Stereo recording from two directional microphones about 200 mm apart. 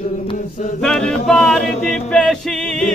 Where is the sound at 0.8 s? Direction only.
5° left (ahead or behind).